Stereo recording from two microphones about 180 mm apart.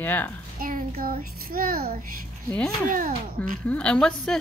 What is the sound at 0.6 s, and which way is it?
Child singing, 50° right (ahead or behind).